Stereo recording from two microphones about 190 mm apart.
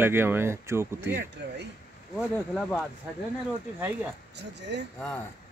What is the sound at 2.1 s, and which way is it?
Speech, centre (ahead or behind).